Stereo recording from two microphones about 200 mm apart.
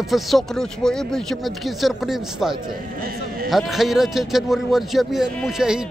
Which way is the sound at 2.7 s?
45° right (ahead or behind).